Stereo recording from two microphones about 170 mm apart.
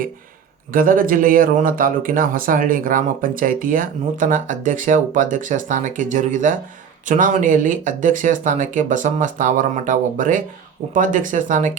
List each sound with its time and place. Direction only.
0.7 s speech: 55° right (ahead or behind)